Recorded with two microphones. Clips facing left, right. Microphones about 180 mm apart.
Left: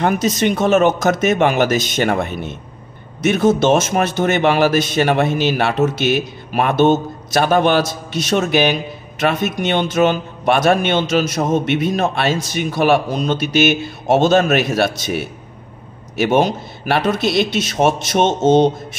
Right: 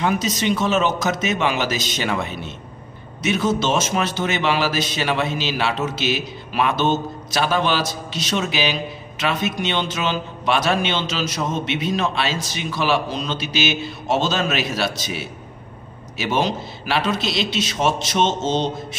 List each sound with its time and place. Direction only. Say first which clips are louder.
0.0 s a man's voice: left 5 dB; 55° left (ahead or behind)